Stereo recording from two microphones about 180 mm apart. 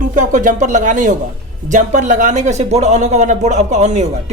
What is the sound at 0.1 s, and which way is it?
Speech, 45° right (ahead or behind).